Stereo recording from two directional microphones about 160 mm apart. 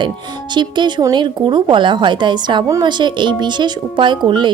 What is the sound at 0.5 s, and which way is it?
Speech, 30° right (ahead or behind).